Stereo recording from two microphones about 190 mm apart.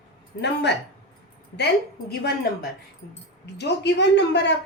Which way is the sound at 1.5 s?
60° left (ahead or behind).